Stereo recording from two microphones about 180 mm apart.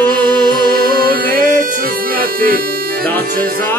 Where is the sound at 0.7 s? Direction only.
55° right (ahead or behind).